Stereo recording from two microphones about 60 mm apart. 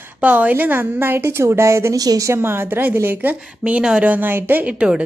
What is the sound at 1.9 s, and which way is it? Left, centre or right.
Speech, right.